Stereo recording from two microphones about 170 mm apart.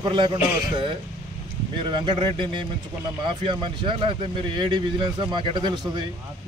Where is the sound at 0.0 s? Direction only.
30° right (ahead or behind).